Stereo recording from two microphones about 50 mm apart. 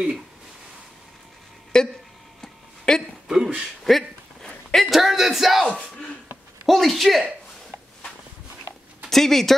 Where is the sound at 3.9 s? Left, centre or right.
Centre.